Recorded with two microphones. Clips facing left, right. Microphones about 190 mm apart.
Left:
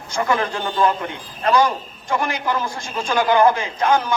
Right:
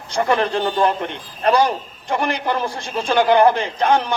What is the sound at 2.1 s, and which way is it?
A man's voice, 35° right (ahead or behind).